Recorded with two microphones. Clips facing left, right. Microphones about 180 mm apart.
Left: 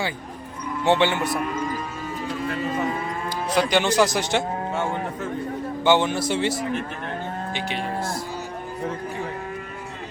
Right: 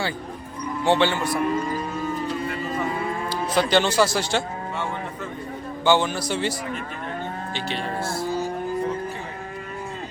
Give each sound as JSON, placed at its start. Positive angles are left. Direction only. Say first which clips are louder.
{"t": 0.9, "sound": "a man's voice", "louder": "even", "side_deg": 20}
{"t": 3.5, "sound": "speech", "louder": "even", "side_deg": 10}
{"t": 5.8, "sound": "a man's voice", "louder": "left 1 dB", "side_deg": 25}
{"t": 7.5, "sound": "speech", "louder": "even", "side_deg": 15}